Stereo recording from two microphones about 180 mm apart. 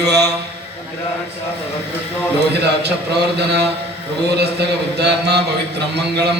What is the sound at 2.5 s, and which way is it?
A man's voice, 70° right (ahead or behind).